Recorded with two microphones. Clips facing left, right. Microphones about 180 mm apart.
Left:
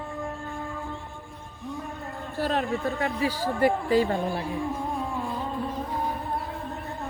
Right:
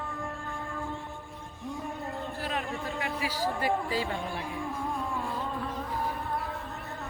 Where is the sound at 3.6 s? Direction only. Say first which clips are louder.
Left 11 dB; 50° left (ahead or behind).